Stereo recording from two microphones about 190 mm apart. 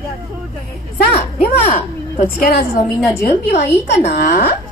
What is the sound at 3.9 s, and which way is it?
Speech, 60° left (ahead or behind).